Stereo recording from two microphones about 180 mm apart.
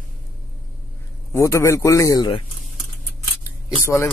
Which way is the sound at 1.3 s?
15° left (ahead or behind).